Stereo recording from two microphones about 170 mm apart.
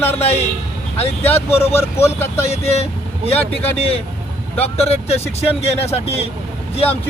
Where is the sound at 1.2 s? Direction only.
10° left (ahead or behind).